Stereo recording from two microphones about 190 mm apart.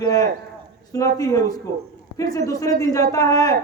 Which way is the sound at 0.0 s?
20° left (ahead or behind).